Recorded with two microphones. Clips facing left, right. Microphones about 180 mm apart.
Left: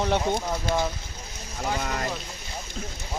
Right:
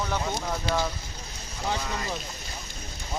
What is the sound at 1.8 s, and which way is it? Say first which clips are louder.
Speech: left 3 dB; 55° left (ahead or behind).